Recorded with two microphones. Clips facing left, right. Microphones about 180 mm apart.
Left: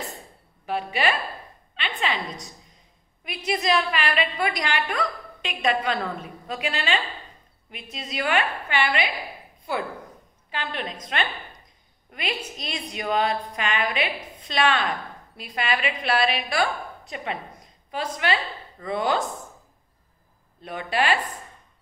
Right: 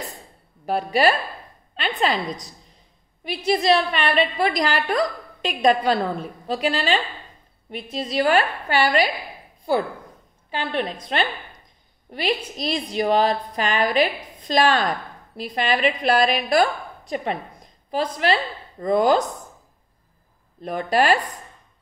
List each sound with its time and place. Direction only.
0.7 s a woman's voice: 40° right (ahead or behind)
1.8 s a sound: 40° right (ahead or behind)
3.3 s a woman's voice: 30° right (ahead or behind)
10.5 s a woman's voice: 35° right (ahead or behind)
20.6 s a woman's voice: 40° right (ahead or behind)